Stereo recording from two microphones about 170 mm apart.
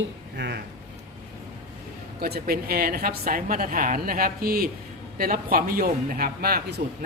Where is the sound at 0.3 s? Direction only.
90° right.